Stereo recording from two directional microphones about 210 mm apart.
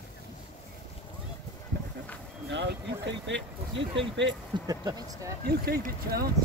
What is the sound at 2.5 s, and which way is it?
Speech, 55° right (ahead or behind).